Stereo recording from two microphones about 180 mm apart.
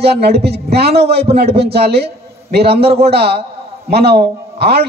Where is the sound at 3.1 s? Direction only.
60° right (ahead or behind).